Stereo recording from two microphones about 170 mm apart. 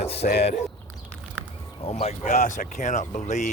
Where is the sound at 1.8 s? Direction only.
35° left (ahead or behind).